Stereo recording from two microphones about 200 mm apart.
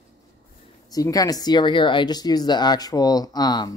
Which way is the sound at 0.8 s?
20° left (ahead or behind).